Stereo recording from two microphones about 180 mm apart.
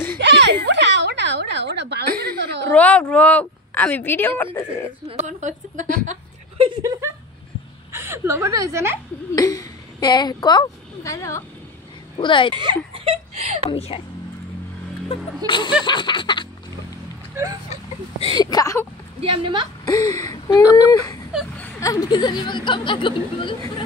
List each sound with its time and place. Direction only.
0.2 s a sound: 75° right (ahead or behind)
2.7 s speech: 5° left (ahead or behind)
5.0 s a woman's voice: 40° right (ahead or behind)
6.6 s a woman's voice: 25° right (ahead or behind)
7.9 s a woman's voice: 15° right (ahead or behind)
9.3 s speech: 20° left (ahead or behind)
12.2 s speech: 25° left (ahead or behind)
12.5 s speech: 25° right (ahead or behind)
13.7 s speech: 30° left (ahead or behind)
15.0 s speech: 25° left (ahead or behind)
17.4 s a woman's voice: 15° right (ahead or behind)
18.2 s speech: 25° left (ahead or behind)
19.2 s a woman's voice: 30° right (ahead or behind)
19.9 s speech: 20° left (ahead or behind)